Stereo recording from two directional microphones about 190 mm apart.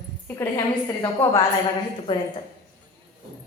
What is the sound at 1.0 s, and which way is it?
Speech, 25° left (ahead or behind).